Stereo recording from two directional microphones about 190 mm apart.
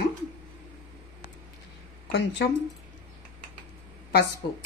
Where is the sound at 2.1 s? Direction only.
65° left (ahead or behind).